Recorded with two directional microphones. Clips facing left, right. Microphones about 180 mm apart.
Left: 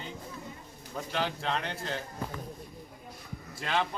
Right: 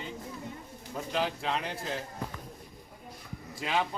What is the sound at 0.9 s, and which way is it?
A man's voice, 5° right (ahead or behind).